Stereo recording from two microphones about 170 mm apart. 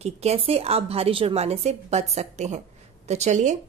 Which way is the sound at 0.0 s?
40° right (ahead or behind).